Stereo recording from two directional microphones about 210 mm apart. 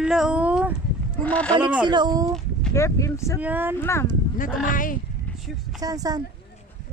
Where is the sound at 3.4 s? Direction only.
10° right (ahead or behind).